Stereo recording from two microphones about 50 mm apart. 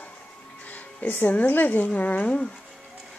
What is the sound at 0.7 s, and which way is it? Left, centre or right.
Music, left.